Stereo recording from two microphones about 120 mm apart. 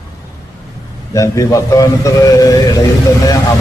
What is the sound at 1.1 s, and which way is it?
A man's voice, 25° left (ahead or behind).